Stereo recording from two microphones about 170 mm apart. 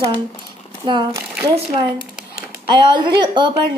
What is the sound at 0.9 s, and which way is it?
Speech, 25° right (ahead or behind).